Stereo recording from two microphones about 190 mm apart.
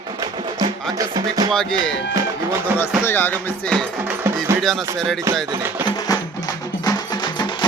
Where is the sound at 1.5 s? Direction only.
5° left (ahead or behind).